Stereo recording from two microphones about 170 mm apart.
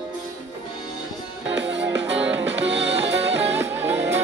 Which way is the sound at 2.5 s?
90° right.